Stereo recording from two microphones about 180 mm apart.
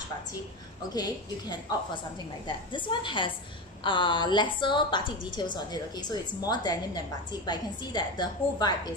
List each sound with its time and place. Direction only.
0.9 s a woman's voice: 20° left (ahead or behind)